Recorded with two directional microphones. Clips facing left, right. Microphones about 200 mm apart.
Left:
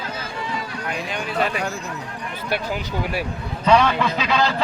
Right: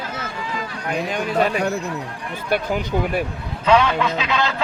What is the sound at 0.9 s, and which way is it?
Speech, 45° right (ahead or behind).